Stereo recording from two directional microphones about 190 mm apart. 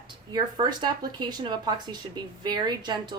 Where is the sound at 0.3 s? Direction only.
25° right (ahead or behind).